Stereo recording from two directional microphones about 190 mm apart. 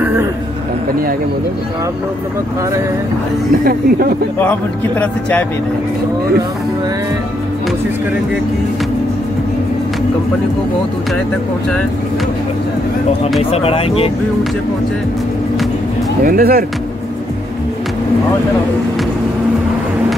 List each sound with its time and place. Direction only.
0.0 s a sound: 10° right (ahead or behind)
4.4 s speech: 10° left (ahead or behind)
13.4 s speech: 30° left (ahead or behind)
16.3 s speech: 50° right (ahead or behind)